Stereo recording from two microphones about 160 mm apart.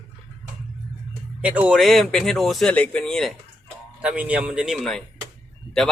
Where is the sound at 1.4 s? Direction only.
5° right (ahead or behind).